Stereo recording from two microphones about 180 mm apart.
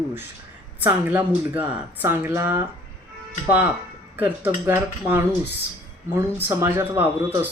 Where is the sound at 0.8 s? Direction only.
10° right (ahead or behind).